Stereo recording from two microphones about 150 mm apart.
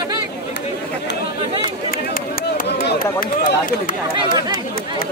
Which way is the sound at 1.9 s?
75° left (ahead or behind).